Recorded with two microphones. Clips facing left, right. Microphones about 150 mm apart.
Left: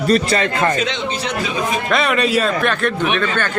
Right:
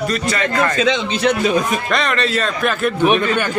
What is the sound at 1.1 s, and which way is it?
Speech, 50° right (ahead or behind).